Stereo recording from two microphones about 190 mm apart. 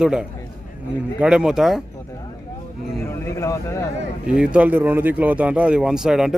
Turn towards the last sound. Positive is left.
turn(degrees=-5)  # may be behind; listen again after turning